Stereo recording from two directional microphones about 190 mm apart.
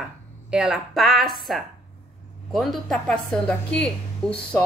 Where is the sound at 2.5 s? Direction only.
Centre (ahead or behind).